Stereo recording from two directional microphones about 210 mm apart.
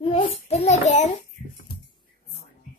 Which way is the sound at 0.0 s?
30° left (ahead or behind).